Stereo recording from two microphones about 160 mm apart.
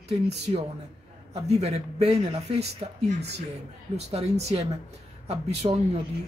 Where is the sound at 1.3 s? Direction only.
40° right (ahead or behind).